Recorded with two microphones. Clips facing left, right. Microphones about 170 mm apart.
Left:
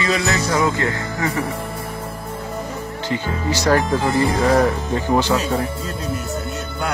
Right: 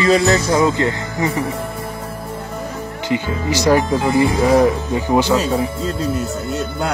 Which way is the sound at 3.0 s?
15° right (ahead or behind).